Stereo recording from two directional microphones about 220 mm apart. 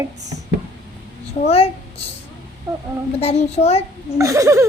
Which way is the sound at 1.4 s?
25° left (ahead or behind).